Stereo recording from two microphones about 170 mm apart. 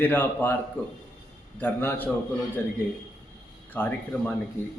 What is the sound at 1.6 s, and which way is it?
Speech, 10° left (ahead or behind).